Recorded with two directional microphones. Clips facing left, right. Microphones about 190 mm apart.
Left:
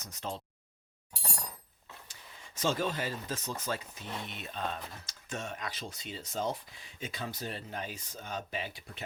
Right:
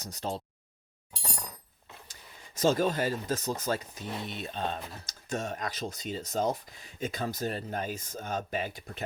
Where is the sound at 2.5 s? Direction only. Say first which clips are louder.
Right 6 dB; 40° right (ahead or behind).